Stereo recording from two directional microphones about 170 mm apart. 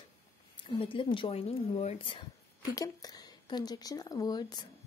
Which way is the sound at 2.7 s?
20° left (ahead or behind).